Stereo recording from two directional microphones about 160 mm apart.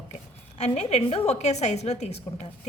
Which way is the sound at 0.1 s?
45° left (ahead or behind).